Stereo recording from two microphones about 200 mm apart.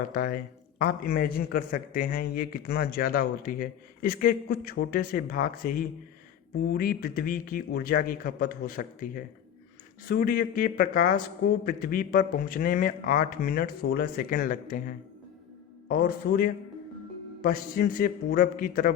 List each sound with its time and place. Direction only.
0.1 s a man's voice: 45° left (ahead or behind)